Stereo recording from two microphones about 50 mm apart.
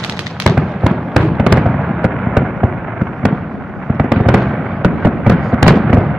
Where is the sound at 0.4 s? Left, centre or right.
Centre.